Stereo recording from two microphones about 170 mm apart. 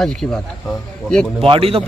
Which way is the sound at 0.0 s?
Centre (ahead or behind).